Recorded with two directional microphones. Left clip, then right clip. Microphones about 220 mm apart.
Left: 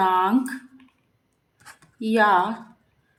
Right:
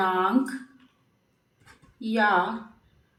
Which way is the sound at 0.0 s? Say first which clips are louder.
Left 4 dB; 30° left (ahead or behind).